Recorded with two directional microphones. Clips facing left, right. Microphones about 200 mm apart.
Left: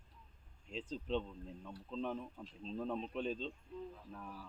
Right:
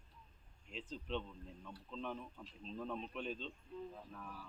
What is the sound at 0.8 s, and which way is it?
Speech, 35° left (ahead or behind).